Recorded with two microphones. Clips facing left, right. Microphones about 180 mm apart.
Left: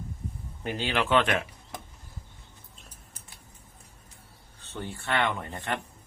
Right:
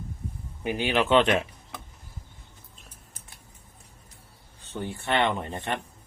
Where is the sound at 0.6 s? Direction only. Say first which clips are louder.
Right 4 dB; 15° right (ahead or behind).